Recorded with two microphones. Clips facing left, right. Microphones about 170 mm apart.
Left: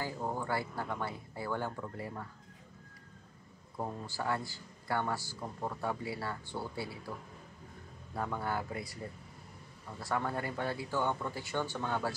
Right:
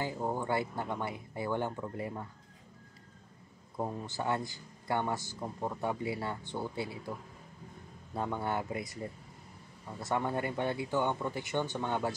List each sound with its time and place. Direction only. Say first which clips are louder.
0.0 s a man's voice: right 3 dB; 20° right (ahead or behind)
3.7 s a man's voice: right 3 dB; 20° right (ahead or behind)
8.1 s a man's voice: right 2 dB; 25° right (ahead or behind)
9.9 s a man's voice: right 2 dB; 20° right (ahead or behind)